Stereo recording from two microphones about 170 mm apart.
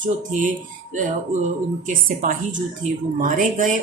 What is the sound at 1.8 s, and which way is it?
Speech, 50° right (ahead or behind).